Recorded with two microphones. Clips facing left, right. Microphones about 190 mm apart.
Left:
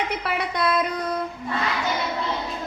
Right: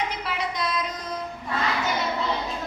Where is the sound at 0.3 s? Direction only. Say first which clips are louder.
Left 4 dB; 60° left (ahead or behind).